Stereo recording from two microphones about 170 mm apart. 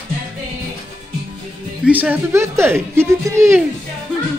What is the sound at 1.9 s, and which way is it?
Speech, 10° right (ahead or behind).